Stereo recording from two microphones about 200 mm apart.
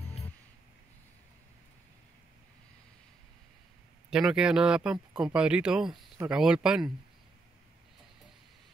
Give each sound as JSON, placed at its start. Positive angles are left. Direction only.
{"t": 0.0, "sound": "music", "side_deg": 30}
{"t": 4.1, "sound": "speech", "side_deg": -5}